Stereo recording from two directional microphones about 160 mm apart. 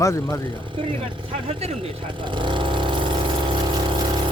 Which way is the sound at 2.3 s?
30° right (ahead or behind).